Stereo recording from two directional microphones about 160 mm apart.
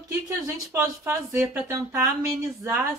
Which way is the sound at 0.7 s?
15° right (ahead or behind).